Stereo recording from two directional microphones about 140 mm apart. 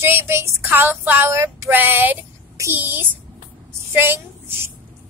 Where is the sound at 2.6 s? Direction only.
15° right (ahead or behind).